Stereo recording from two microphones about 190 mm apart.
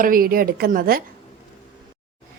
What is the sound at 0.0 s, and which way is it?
A woman's voice, 50° right (ahead or behind).